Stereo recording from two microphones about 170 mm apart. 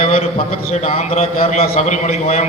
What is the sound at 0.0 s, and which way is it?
A man's voice, 35° left (ahead or behind).